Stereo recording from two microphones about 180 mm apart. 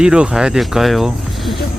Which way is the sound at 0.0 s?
5° right (ahead or behind).